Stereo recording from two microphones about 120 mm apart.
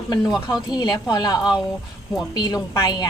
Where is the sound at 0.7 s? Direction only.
35° left (ahead or behind).